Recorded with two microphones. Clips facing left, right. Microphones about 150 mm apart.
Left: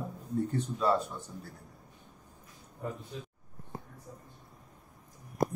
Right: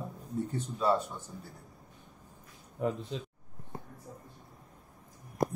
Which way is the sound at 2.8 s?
90° right.